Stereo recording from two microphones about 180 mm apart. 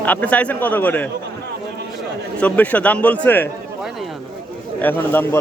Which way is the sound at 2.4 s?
10° left (ahead or behind).